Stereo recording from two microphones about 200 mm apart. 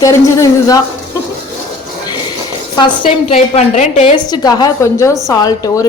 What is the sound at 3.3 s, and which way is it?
Speech, 30° left (ahead or behind).